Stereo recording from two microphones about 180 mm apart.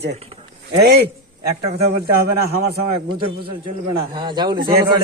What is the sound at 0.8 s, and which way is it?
Speech, 60° right (ahead or behind).